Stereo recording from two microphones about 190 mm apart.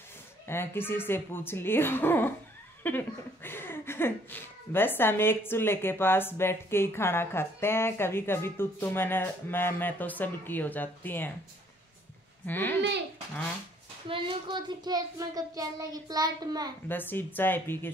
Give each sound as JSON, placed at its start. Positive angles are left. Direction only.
{"t": 0.5, "sound": "speech", "side_deg": 10}
{"t": 12.4, "sound": "speech", "side_deg": 10}
{"t": 14.0, "sound": "child singing", "side_deg": -30}
{"t": 16.8, "sound": "speech", "side_deg": 10}